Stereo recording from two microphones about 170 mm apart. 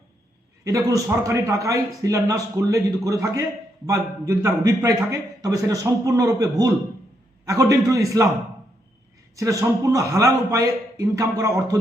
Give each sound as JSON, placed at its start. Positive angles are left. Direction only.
{"t": 0.6, "sound": "a man's voice", "side_deg": -20}
{"t": 9.3, "sound": "a man's voice", "side_deg": -20}